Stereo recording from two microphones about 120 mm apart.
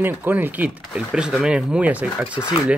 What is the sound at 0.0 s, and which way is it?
Speech, 15° right (ahead or behind).